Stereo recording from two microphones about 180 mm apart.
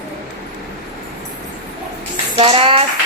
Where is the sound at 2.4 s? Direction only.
30° right (ahead or behind).